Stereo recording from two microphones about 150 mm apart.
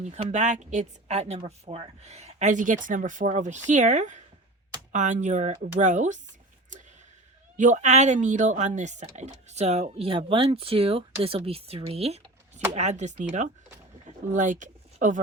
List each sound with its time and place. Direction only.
0.0 s speech: 50° right (ahead or behind)
7.5 s speech: 55° right (ahead or behind); by 11.8 s 40° right (ahead or behind)
11.9 s a sound: 40° right (ahead or behind)
12.7 s speech: 50° right (ahead or behind)